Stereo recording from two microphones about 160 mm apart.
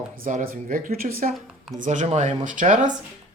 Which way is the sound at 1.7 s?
50° right (ahead or behind).